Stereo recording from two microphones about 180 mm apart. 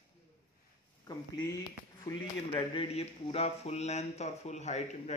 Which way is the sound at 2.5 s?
30° left (ahead or behind).